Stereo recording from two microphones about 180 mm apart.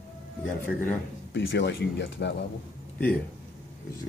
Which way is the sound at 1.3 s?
90° left.